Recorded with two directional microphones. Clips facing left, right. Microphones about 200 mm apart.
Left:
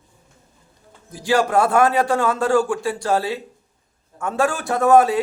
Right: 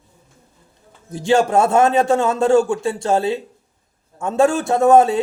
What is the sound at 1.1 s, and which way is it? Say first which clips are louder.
A man's voice: right 3 dB; 25° right (ahead or behind).